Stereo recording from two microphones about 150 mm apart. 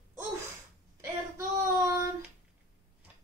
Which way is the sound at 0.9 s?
20° right (ahead or behind).